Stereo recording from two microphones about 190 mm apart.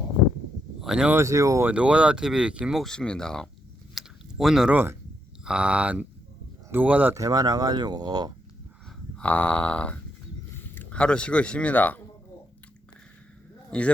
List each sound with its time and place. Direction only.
0.8 s speech: 5° right (ahead or behind)
3.9 s a sound: centre (ahead or behind)
5.5 s speech: 5° right (ahead or behind)
9.1 s a sound: 10° left (ahead or behind)
10.5 s speech: 10° left (ahead or behind)
13.7 s a man's voice: 5° left (ahead or behind)